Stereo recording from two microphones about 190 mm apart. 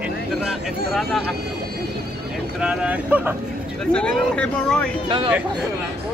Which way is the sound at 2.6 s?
5° right (ahead or behind).